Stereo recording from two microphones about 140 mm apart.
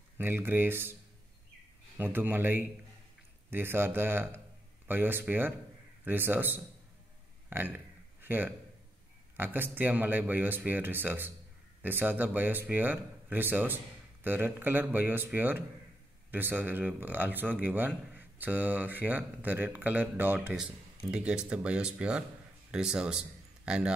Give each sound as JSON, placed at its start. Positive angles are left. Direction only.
{"t": 0.2, "sound": "speech", "side_deg": -15}
{"t": 2.0, "sound": "speech", "side_deg": -15}
{"t": 7.4, "sound": "a sound", "side_deg": -15}
{"t": 9.4, "sound": "a man's voice", "side_deg": -15}